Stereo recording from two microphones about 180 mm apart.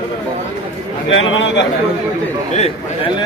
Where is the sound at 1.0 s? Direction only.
90° left.